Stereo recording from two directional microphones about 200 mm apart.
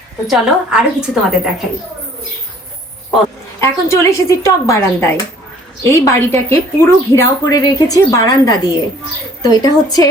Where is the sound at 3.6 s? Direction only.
15° left (ahead or behind).